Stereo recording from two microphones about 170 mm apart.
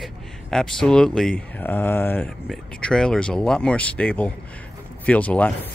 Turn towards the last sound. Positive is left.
turn(degrees=10)  # may be behind; listen again after turning